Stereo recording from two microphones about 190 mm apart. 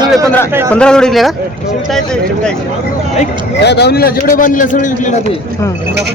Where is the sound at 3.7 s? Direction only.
60° left (ahead or behind).